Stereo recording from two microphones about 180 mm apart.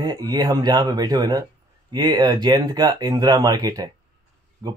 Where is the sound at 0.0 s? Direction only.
20° right (ahead or behind).